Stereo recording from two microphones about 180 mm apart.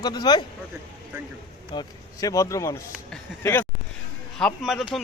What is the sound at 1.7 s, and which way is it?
Speech, 20° left (ahead or behind).